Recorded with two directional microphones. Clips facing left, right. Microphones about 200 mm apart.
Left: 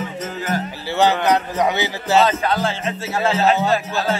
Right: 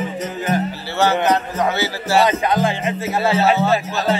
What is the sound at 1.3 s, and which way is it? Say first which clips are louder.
Speech: even; 15° left (ahead or behind).